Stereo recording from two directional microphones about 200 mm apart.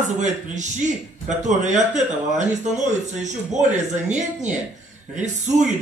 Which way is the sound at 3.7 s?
35° right (ahead or behind).